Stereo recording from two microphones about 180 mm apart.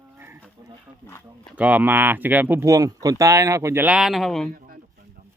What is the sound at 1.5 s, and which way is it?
Speech, 10° right (ahead or behind).